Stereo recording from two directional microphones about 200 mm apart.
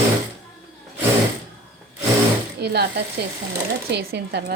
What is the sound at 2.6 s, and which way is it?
A woman's voice, 55° right (ahead or behind).